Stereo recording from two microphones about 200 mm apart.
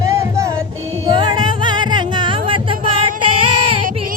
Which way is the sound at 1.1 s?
25° right (ahead or behind).